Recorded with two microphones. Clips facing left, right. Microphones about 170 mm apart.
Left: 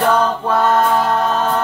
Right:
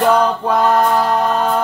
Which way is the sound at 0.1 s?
15° right (ahead or behind).